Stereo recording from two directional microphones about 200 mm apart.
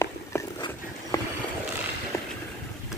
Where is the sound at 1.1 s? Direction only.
15° left (ahead or behind).